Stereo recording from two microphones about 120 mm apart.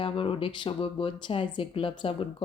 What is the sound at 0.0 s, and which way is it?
Speech, 50° left (ahead or behind).